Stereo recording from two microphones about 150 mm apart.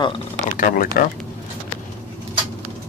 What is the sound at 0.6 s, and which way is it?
Speech, 70° left (ahead or behind).